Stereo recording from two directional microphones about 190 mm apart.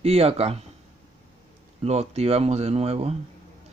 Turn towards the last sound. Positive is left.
turn(degrees=-35)  # may be behind; listen again after turning